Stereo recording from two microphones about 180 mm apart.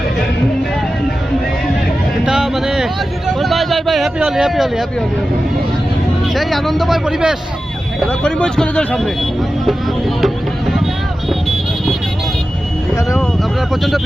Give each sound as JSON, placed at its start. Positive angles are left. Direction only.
{"t": 2.2, "sound": "speech", "side_deg": 0}
{"t": 6.2, "sound": "speech", "side_deg": 0}
{"t": 11.3, "sound": "vehicle", "side_deg": 0}
{"t": 13.0, "sound": "speech", "side_deg": 15}